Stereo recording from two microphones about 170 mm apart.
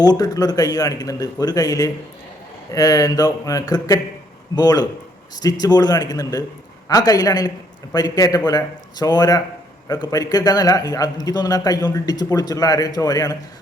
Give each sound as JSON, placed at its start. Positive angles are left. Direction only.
{"t": 0.0, "sound": "a man's voice", "side_deg": 20}